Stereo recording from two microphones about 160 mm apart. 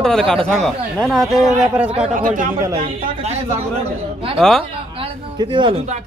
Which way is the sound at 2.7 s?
40° right (ahead or behind).